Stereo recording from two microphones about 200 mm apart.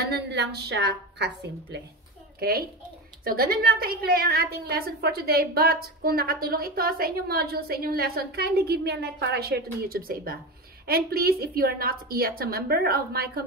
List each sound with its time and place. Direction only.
0.0 s a woman's voice: 55° right (ahead or behind)
3.3 s a woman's voice: 45° right (ahead or behind)